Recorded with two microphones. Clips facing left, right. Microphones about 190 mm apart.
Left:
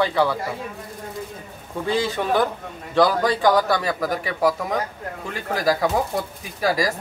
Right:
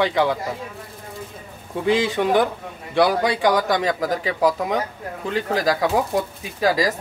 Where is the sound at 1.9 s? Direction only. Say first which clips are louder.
Right 3 dB; 15° right (ahead or behind).